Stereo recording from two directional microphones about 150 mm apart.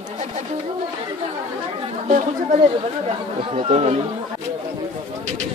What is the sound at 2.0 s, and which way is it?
Speech, 55° right (ahead or behind).